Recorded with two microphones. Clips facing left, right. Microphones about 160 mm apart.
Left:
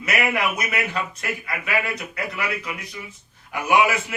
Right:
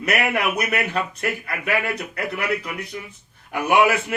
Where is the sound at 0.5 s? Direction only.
60° right (ahead or behind).